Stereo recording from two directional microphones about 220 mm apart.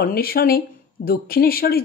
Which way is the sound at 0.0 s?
45° left (ahead or behind).